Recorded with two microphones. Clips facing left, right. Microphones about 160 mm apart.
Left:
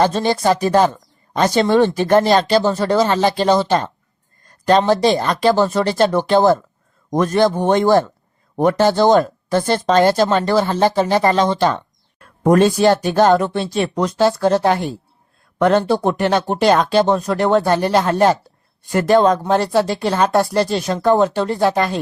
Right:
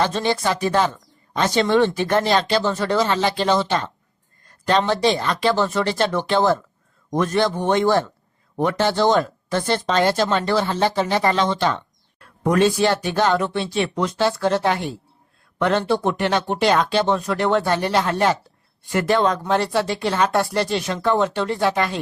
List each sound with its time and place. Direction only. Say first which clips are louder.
0.0 s speech: left 5 dB; 40° left (ahead or behind)